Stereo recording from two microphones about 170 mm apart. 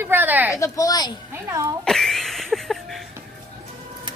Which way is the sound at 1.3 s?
15° right (ahead or behind).